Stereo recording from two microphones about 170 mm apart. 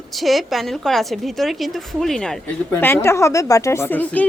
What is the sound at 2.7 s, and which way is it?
Speech, 15° left (ahead or behind).